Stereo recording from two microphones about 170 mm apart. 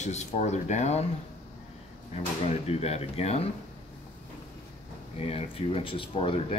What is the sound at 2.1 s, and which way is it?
Speech, 40° left (ahead or behind).